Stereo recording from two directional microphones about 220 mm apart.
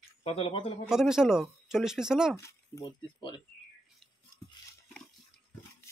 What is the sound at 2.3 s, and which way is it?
Speech, 15° left (ahead or behind).